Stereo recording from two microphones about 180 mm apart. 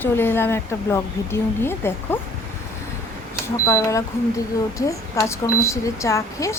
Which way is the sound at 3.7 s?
15° left (ahead or behind).